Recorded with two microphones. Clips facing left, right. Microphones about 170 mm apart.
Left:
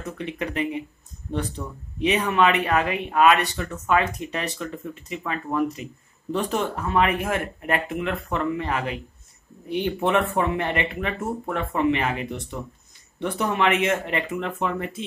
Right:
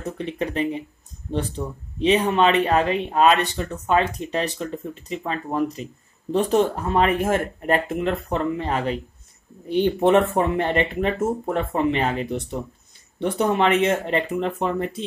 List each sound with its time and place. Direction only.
0.0 s speech: 30° right (ahead or behind)